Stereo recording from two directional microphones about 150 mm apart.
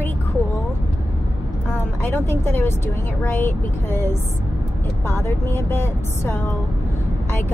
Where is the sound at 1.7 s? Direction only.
15° left (ahead or behind).